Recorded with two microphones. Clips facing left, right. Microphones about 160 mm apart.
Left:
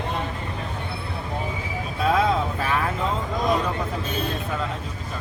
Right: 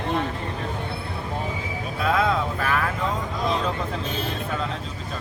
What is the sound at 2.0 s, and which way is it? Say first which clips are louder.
Speech: left 1 dB; 30° left (ahead or behind).